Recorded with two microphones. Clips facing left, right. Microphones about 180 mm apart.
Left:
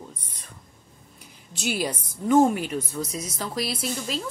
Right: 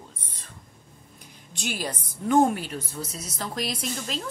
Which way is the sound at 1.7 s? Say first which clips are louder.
Left 4 dB; 10° left (ahead or behind).